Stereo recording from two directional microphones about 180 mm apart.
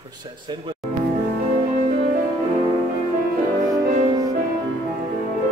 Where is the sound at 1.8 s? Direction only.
40° right (ahead or behind).